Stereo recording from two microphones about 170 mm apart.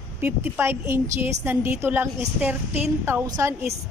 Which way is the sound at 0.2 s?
15° right (ahead or behind).